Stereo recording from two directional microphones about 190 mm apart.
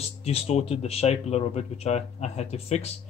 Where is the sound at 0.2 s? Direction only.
35° left (ahead or behind).